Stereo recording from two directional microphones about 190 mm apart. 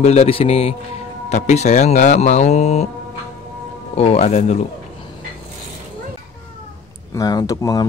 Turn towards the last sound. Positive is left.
turn(degrees=20)  # may be behind; listen again after turning